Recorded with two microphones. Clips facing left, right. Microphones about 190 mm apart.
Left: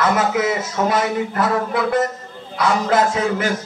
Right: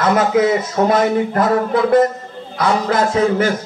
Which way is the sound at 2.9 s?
40° right (ahead or behind).